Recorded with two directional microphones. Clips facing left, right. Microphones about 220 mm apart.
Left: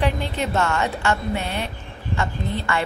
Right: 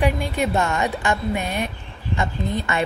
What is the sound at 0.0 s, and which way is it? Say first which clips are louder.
A woman's voice: right 2 dB; 15° right (ahead or behind).